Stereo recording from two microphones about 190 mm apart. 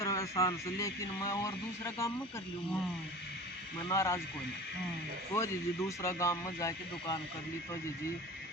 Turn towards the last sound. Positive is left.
turn(degrees=15)  # may be behind; listen again after turning